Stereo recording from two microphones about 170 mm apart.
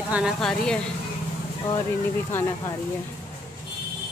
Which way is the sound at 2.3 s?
15° left (ahead or behind).